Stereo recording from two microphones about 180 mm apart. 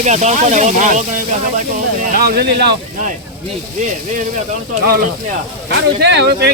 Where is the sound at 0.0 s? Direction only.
40° right (ahead or behind).